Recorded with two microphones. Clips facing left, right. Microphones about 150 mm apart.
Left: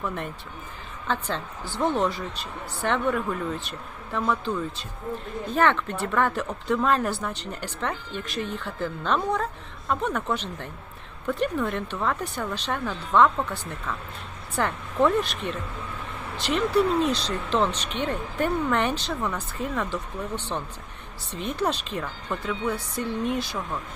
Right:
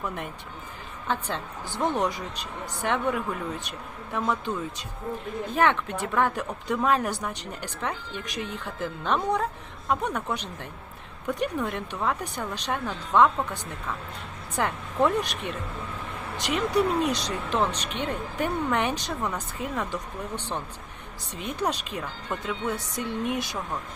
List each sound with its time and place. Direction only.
1.0 s a woman's voice: 15° right (ahead or behind)